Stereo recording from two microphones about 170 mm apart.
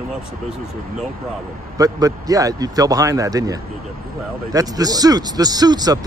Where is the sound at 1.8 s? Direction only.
20° right (ahead or behind).